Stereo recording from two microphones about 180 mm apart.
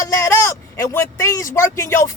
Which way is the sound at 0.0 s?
20° left (ahead or behind).